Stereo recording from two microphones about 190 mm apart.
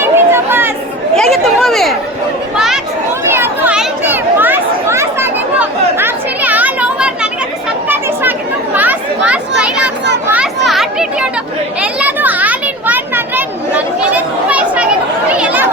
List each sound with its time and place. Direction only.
0.0 s chatter: 15° right (ahead or behind)
1.1 s a sound: centre (ahead or behind)
2.6 s chatter: 5° right (ahead or behind)
8.7 s chatter: 10° right (ahead or behind)
10.2 s children playing: 5° right (ahead or behind)
11.8 s a sound: 10° right (ahead or behind)
15.4 s chatter: 10° right (ahead or behind)